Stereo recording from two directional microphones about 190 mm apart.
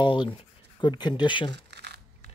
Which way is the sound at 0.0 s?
25° left (ahead or behind).